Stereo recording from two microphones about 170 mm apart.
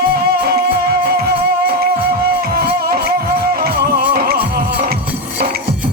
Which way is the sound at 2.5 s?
60° right (ahead or behind).